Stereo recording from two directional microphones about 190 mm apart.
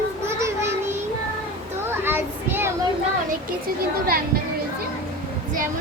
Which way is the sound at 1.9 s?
10° right (ahead or behind).